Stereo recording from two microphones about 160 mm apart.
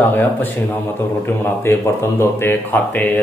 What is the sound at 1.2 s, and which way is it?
A man's voice, 15° left (ahead or behind).